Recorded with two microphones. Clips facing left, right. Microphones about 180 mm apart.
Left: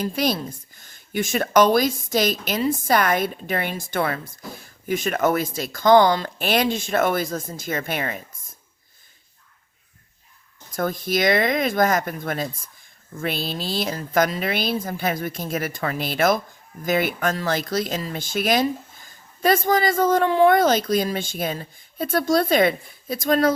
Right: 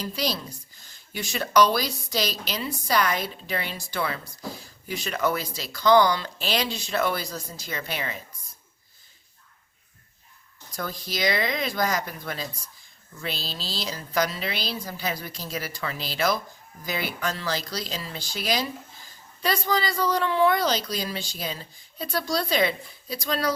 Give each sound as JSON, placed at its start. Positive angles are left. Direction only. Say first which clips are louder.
{"t": 0.0, "sound": "speech", "louder": "left 6 dB", "side_deg": 50}
{"t": 10.7, "sound": "speech", "louder": "left 9 dB", "side_deg": 50}